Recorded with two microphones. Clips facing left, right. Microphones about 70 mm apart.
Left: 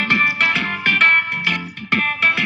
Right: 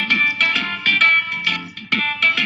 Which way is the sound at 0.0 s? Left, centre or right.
Left.